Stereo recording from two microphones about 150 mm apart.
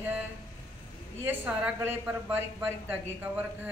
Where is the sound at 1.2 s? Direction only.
15° right (ahead or behind).